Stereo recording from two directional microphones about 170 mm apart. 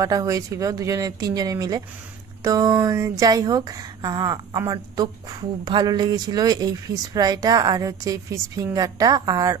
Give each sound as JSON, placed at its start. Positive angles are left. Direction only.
{"t": 0.0, "sound": "speech", "side_deg": -20}